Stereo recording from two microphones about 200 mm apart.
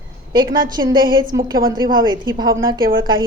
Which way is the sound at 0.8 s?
15° right (ahead or behind).